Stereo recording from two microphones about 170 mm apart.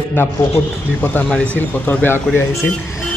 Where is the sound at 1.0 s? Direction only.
10° left (ahead or behind).